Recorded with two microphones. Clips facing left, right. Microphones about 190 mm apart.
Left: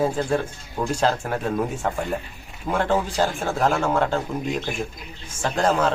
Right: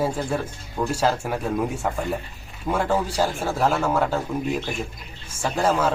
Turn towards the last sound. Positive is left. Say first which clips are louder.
# left 1 dB
turn(degrees=-10)  # may be behind; listen again after turning